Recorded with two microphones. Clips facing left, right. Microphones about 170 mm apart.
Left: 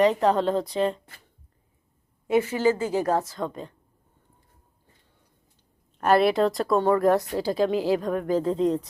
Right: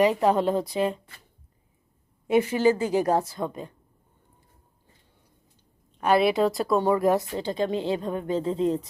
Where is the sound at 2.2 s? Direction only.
20° right (ahead or behind).